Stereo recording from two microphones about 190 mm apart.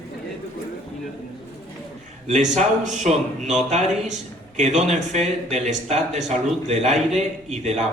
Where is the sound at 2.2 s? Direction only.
35° right (ahead or behind).